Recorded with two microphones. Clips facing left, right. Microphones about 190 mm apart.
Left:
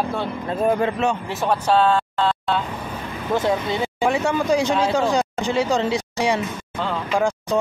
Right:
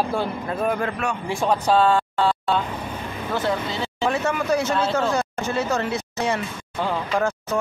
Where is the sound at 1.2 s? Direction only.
10° right (ahead or behind).